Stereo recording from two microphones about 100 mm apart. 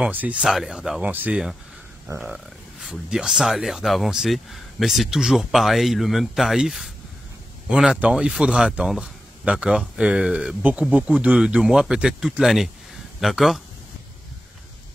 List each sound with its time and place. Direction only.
0.1 s speech: 15° right (ahead or behind)
1.0 s speech: 15° right (ahead or behind)
2.1 s speech: 5° right (ahead or behind)